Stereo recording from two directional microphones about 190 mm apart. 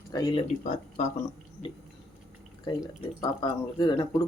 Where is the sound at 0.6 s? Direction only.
40° left (ahead or behind).